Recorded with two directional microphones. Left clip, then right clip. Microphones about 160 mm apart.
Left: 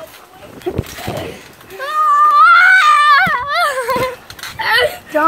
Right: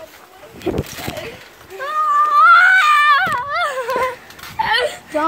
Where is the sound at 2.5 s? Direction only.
10° right (ahead or behind).